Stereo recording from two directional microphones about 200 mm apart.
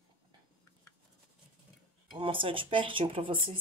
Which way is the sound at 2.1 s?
25° right (ahead or behind).